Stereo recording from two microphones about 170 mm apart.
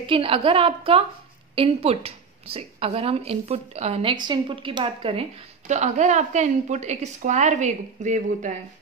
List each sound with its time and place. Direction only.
0.0 s a woman's voice: 30° right (ahead or behind)
5.7 s speech: 45° right (ahead or behind)